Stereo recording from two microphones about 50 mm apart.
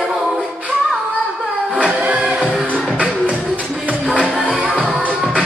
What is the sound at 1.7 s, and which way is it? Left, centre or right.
Music, right.